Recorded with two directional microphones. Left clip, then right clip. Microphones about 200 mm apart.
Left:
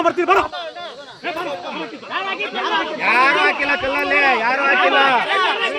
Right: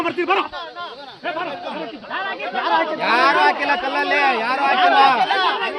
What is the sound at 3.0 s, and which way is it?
Speech, centre (ahead or behind).